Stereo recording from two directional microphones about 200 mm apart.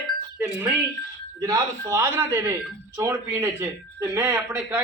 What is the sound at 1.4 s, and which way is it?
Speech, 15° right (ahead or behind).